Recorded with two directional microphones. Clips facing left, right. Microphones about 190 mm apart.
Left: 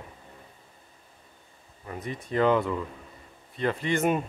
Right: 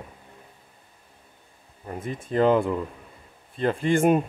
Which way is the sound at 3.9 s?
50° right (ahead or behind).